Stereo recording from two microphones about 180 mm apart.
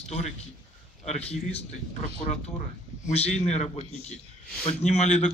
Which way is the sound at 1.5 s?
35° left (ahead or behind).